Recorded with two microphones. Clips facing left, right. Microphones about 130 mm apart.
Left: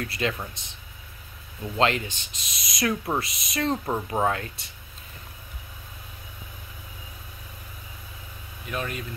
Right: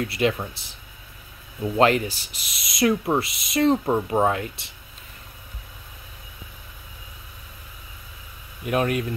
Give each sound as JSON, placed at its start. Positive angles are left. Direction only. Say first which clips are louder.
{"t": 0.0, "sound": "speech", "louder": "right 6 dB", "side_deg": -25}
{"t": 1.6, "sound": "speech", "louder": "right 5 dB", "side_deg": -25}
{"t": 8.6, "sound": "speech", "louder": "right 9 dB", "side_deg": -60}